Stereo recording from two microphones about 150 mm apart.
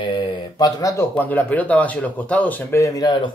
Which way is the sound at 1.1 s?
10° left (ahead or behind).